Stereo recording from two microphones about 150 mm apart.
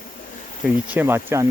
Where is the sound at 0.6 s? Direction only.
10° right (ahead or behind).